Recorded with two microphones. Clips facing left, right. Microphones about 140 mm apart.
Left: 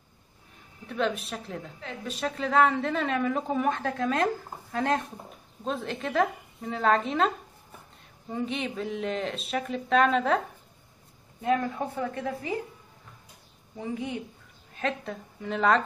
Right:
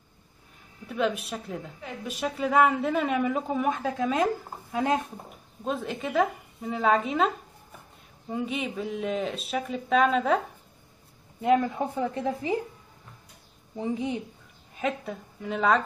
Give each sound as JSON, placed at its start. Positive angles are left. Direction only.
{"t": 0.8, "sound": "a woman's voice", "side_deg": -5}
{"t": 8.3, "sound": "a woman's voice", "side_deg": -5}
{"t": 11.4, "sound": "a woman's voice", "side_deg": -20}
{"t": 13.7, "sound": "a woman's voice", "side_deg": -20}
{"t": 14.8, "sound": "a woman's voice", "side_deg": -5}